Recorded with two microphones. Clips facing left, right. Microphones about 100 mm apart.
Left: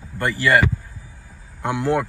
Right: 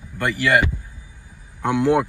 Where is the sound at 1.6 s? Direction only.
20° right (ahead or behind).